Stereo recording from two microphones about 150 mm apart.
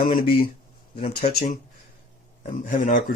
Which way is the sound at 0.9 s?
45° left (ahead or behind).